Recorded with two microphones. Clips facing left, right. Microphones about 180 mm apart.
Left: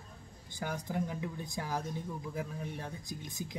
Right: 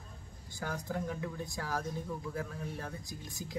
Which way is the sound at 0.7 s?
15° left (ahead or behind).